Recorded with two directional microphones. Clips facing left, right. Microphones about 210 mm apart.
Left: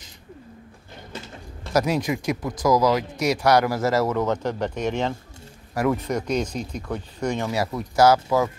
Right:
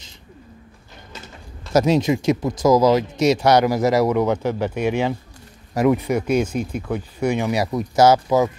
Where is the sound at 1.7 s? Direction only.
25° right (ahead or behind).